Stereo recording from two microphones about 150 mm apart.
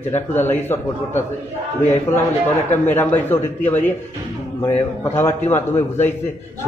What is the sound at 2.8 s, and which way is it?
A man's voice, 15° left (ahead or behind).